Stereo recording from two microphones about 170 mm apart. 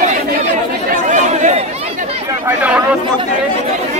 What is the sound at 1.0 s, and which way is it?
Chatter, 45° right (ahead or behind).